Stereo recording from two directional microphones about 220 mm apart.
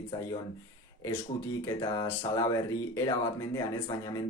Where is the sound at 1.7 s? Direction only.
15° left (ahead or behind).